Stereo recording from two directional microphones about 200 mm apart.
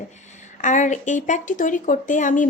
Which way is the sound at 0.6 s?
40° left (ahead or behind).